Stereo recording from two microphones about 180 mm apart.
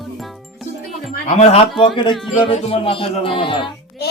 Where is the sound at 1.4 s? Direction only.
35° left (ahead or behind).